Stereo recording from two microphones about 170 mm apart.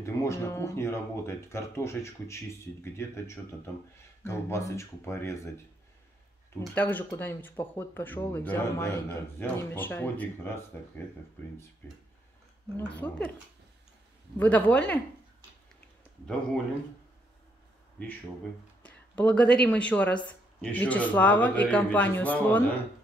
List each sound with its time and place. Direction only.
0.0 s speech: 15° left (ahead or behind)
6.6 s speech: 10° left (ahead or behind)
12.7 s speech: 10° left (ahead or behind)
14.4 s speech: 10° left (ahead or behind)
18.0 s speech: 10° left (ahead or behind)